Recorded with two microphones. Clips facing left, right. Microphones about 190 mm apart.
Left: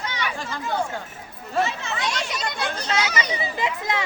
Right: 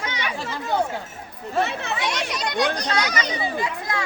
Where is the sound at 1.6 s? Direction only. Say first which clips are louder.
Right 1 dB; 60° right (ahead or behind).